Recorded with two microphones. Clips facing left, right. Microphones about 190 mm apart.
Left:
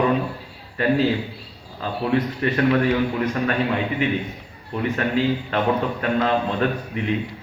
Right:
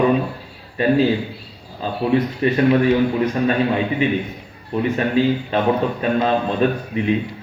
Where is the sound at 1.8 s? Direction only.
20° right (ahead or behind).